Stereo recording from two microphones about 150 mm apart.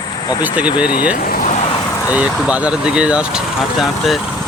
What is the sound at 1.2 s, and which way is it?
Vehicle, 80° left.